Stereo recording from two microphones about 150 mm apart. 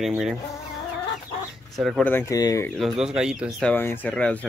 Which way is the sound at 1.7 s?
Centre (ahead or behind).